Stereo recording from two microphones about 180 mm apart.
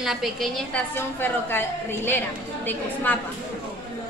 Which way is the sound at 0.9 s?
10° left (ahead or behind).